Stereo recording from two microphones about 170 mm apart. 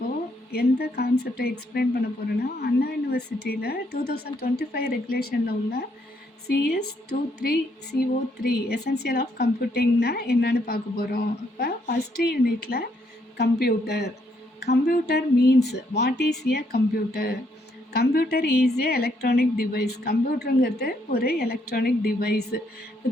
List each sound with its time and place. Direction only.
0.5 s a woman's voice: 70° left (ahead or behind)